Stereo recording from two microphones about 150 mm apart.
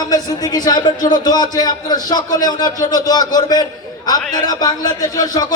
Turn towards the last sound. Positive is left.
turn(degrees=25)  # may be behind; listen again after turning